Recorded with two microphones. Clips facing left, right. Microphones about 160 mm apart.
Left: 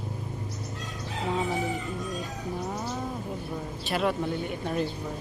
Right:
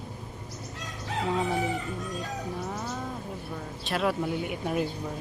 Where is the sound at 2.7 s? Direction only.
10° left (ahead or behind).